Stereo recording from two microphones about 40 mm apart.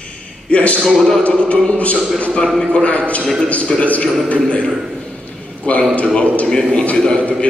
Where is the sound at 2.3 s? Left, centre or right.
Left.